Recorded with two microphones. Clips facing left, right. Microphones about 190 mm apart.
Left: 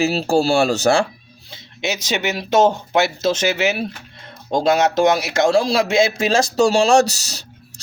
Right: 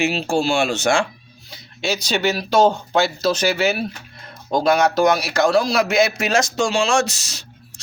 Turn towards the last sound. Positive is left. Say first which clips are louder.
# left 3 dB
turn(degrees=35)  # may be behind; listen again after turning